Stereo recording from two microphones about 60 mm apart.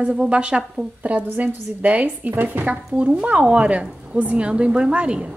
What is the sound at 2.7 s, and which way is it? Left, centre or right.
A woman's voice, right.